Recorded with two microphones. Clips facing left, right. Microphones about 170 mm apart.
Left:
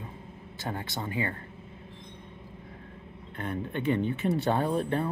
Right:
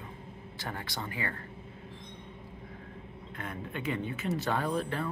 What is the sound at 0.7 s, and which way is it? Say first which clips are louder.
Speech: left 4 dB; 25° left (ahead or behind).